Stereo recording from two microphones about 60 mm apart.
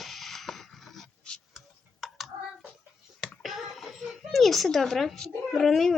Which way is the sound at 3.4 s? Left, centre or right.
Centre.